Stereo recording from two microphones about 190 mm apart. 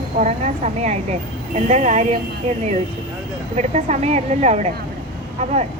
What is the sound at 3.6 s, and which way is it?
A woman's voice, 35° right (ahead or behind).